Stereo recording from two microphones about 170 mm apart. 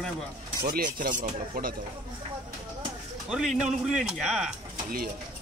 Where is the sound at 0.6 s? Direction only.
60° right (ahead or behind).